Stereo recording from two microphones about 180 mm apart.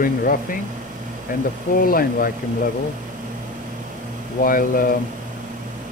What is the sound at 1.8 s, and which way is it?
Speech, 55° left (ahead or behind).